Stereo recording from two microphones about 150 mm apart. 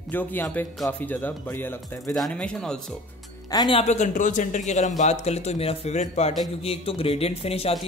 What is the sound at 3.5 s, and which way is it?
Speech, 25° left (ahead or behind).